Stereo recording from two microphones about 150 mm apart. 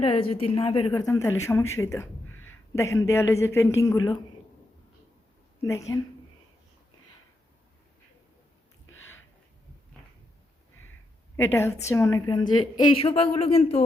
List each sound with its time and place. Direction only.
0.0 s a woman's voice: 40° left (ahead or behind)
5.6 s a woman's voice: 20° left (ahead or behind)
11.3 s a woman's voice: 15° left (ahead or behind)
13.0 s speech: 40° left (ahead or behind)